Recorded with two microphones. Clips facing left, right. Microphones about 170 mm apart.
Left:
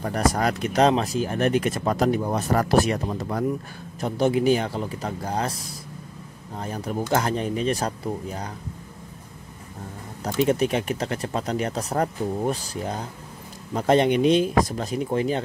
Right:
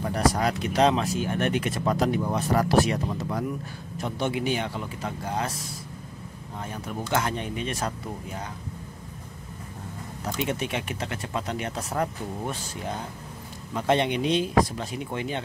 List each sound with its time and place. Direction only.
0.1 s speech: 50° left (ahead or behind)
6.6 s speech: 35° left (ahead or behind)
10.2 s speech: 40° left (ahead or behind)
13.7 s speech: 40° left (ahead or behind)